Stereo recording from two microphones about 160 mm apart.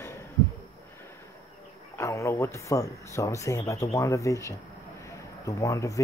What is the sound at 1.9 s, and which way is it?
Speech, 20° left (ahead or behind).